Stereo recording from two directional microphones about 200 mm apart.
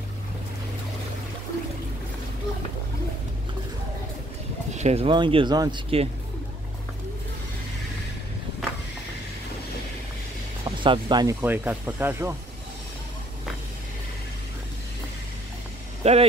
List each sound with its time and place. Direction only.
4.7 s speech: 30° right (ahead or behind)
10.6 s vehicle: 25° right (ahead or behind)
11.4 s speech: 10° right (ahead or behind)
16.0 s speech: 30° right (ahead or behind)